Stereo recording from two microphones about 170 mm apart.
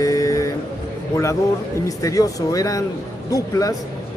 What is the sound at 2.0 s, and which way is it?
Speech, 20° left (ahead or behind).